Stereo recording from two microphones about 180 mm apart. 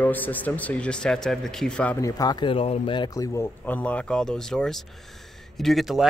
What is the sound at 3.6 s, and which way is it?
Speech, 10° left (ahead or behind).